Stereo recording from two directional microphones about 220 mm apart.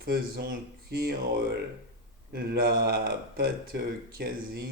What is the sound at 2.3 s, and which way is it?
Speech, 45° right (ahead or behind).